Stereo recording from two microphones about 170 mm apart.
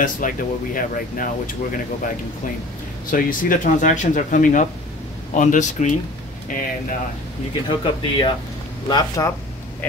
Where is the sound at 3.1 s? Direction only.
55° left (ahead or behind).